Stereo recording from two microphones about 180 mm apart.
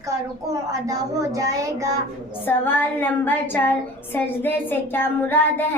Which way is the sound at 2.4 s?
10° left (ahead or behind).